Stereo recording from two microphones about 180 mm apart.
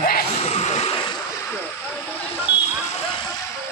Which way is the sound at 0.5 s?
35° left (ahead or behind).